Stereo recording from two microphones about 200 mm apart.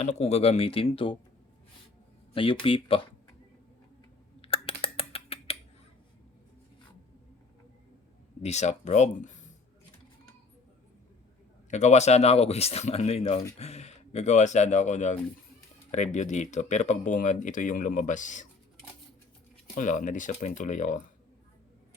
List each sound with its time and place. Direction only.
0.0 s speech: 35° left (ahead or behind)
2.3 s speech: 25° left (ahead or behind)
4.4 s typing: 30° left (ahead or behind)
8.4 s speech: 35° left (ahead or behind)
11.7 s speech: 35° left (ahead or behind)
19.7 s speech: 40° left (ahead or behind)